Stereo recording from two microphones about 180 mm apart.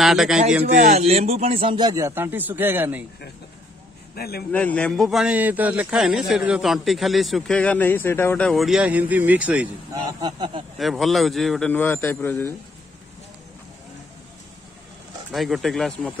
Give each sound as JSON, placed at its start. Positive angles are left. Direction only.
{"t": 0.0, "sound": "a man's voice", "side_deg": 0}
{"t": 0.7, "sound": "a man's voice", "side_deg": -55}
{"t": 0.9, "sound": "a man's voice", "side_deg": -35}
{"t": 4.1, "sound": "speech", "side_deg": 60}
{"t": 4.5, "sound": "a man's voice", "side_deg": 10}
{"t": 10.0, "sound": "speech", "side_deg": -25}
{"t": 10.8, "sound": "a man's voice", "side_deg": 0}
{"t": 15.3, "sound": "a man's voice", "side_deg": 0}